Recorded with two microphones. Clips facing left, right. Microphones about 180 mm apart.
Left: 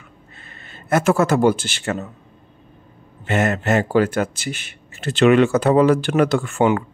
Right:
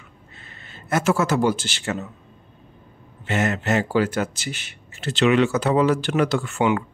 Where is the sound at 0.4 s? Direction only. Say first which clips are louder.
Left 1 dB; 50° left (ahead or behind).